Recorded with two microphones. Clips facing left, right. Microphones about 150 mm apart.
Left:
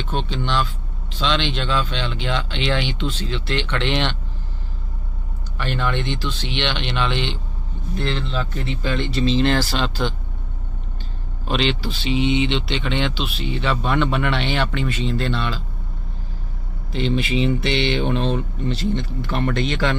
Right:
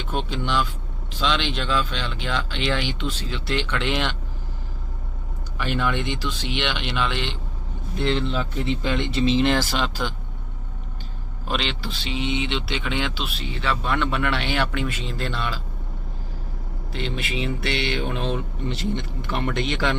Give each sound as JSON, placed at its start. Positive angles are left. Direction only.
{"t": 0.1, "sound": "speech", "side_deg": -10}
{"t": 5.5, "sound": "speech", "side_deg": -10}
{"t": 7.9, "sound": "speech", "side_deg": -15}
{"t": 11.4, "sound": "speech", "side_deg": 0}
{"t": 16.9, "sound": "speech", "side_deg": 0}